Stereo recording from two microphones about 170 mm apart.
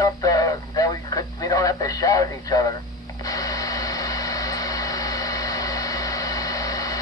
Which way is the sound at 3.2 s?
20° left (ahead or behind).